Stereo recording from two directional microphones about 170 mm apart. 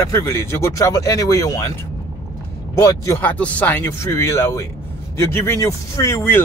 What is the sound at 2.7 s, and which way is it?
Speech, 20° left (ahead or behind).